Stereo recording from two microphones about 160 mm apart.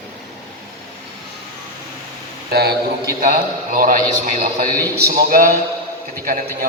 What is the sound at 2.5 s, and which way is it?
Speech, 80° right.